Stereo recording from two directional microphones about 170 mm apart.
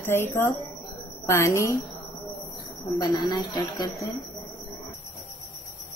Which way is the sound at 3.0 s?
25° left (ahead or behind).